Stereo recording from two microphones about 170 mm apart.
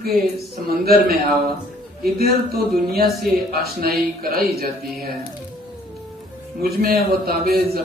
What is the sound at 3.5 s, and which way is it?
Speech, 60° right (ahead or behind).